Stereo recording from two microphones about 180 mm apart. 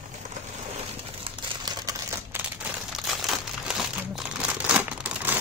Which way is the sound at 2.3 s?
10° right (ahead or behind).